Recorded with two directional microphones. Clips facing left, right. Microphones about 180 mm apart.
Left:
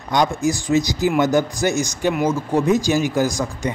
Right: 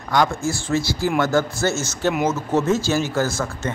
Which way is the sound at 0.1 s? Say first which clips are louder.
Left 2 dB; 20° left (ahead or behind).